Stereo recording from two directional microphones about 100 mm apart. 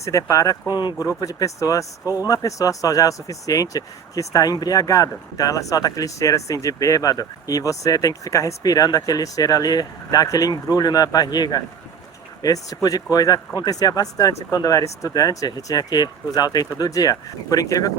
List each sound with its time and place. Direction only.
0.0 s speech: 30° left (ahead or behind)
0.7 s speech: 45° left (ahead or behind)
1.0 s speech: 35° left (ahead or behind)